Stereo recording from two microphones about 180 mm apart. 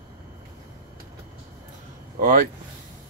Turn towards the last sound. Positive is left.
turn(degrees=-50)  # may be behind; listen again after turning